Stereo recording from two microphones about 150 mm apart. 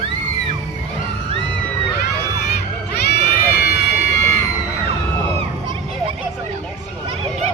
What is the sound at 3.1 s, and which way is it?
Run, 90° left.